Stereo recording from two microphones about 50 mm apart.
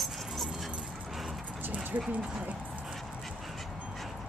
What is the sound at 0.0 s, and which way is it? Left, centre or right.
Dog, centre.